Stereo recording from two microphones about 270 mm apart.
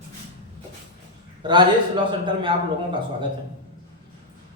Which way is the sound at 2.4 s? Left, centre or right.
Centre.